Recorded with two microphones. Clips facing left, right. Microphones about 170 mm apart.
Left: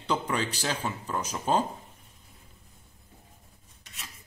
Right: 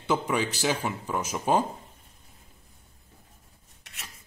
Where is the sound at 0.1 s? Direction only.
10° right (ahead or behind).